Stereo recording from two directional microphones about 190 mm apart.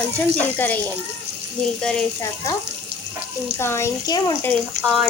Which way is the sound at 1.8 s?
5° left (ahead or behind).